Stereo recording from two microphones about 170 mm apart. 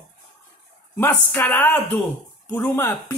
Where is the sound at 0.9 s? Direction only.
10° left (ahead or behind).